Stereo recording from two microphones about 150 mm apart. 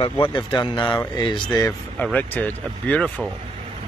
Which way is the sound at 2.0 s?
10° left (ahead or behind).